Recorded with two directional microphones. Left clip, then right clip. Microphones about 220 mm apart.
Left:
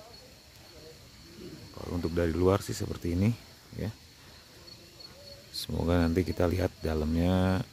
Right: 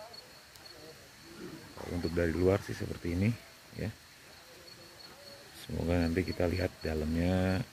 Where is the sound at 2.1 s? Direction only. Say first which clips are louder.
Left 2 dB; 15° left (ahead or behind).